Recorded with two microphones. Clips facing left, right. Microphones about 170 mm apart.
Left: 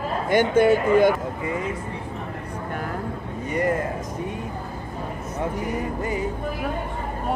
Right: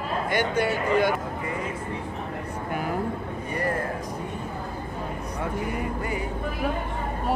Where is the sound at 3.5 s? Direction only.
20° left (ahead or behind).